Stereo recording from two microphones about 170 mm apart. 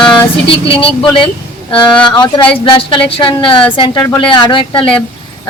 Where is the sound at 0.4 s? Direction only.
30° left (ahead or behind).